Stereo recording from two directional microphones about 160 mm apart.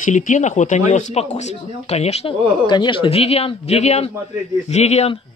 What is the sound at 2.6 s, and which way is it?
Speech, 30° left (ahead or behind).